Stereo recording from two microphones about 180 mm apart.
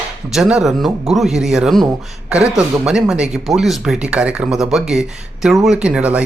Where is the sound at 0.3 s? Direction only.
5° right (ahead or behind).